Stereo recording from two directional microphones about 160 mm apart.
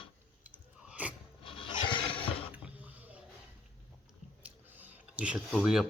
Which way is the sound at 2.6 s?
10° right (ahead or behind).